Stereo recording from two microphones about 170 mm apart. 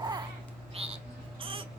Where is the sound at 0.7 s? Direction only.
35° right (ahead or behind).